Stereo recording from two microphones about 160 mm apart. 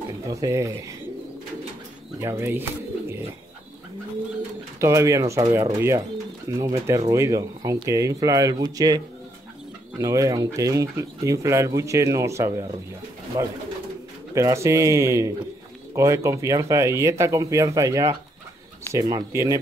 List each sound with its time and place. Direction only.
0.3 s speech: 20° right (ahead or behind)
2.1 s speech: 15° right (ahead or behind)
4.7 s speech: 20° right (ahead or behind)